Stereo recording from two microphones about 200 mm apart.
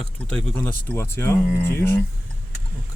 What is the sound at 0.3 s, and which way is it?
Speech, 5° left (ahead or behind).